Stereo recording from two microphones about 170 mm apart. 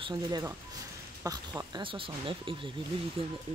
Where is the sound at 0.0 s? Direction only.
25° right (ahead or behind).